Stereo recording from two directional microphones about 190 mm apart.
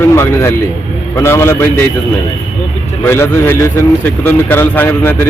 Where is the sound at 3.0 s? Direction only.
15° left (ahead or behind).